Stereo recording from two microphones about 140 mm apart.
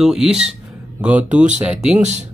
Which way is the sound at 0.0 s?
5° right (ahead or behind).